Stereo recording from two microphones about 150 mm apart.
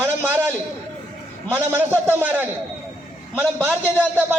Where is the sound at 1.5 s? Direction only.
15° right (ahead or behind).